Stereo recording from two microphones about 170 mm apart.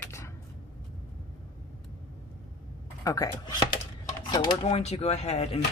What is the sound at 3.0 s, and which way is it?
Speech, 20° left (ahead or behind).